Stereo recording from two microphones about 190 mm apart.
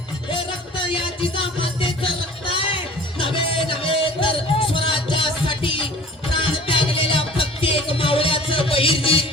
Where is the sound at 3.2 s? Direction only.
30° left (ahead or behind).